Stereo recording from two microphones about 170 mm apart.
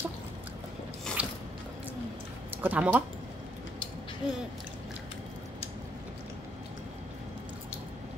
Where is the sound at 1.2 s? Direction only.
5° right (ahead or behind).